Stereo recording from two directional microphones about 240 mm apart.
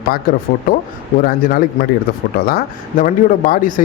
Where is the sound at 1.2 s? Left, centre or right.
Left.